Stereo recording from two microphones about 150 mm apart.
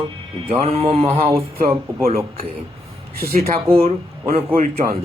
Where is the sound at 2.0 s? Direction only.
40° right (ahead or behind).